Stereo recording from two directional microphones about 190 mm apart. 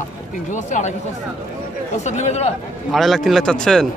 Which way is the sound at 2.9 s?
Centre (ahead or behind).